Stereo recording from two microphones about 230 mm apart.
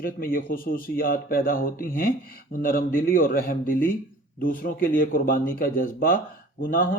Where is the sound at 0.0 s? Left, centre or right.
Left.